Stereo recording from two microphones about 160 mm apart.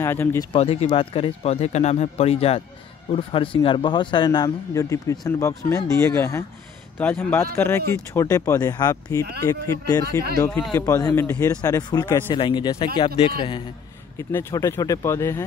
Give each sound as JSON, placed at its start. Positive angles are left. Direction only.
{"t": 0.0, "sound": "speech", "side_deg": 15}
{"t": 0.5, "sound": "a man's voice", "side_deg": 40}
{"t": 14.1, "sound": "a man's voice", "side_deg": 20}